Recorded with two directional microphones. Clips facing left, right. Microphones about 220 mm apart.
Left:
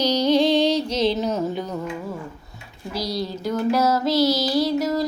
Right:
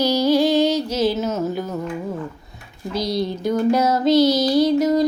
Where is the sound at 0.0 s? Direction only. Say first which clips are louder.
Right 2 dB; 10° right (ahead or behind).